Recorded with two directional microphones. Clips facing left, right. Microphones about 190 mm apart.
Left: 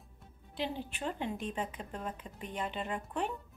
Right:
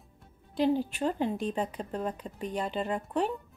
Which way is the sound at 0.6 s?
40° right (ahead or behind).